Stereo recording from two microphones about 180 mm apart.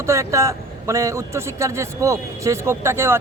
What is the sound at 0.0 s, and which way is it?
A man's voice, 15° right (ahead or behind).